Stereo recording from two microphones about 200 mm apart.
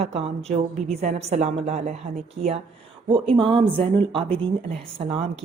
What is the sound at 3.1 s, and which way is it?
Speech, 25° right (ahead or behind).